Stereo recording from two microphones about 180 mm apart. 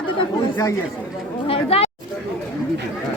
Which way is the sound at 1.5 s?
30° left (ahead or behind).